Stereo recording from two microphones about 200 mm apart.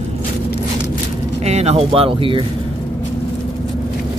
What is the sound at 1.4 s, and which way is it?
Speech, 30° right (ahead or behind).